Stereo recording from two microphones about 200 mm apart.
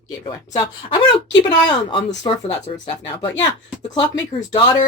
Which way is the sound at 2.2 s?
25° left (ahead or behind).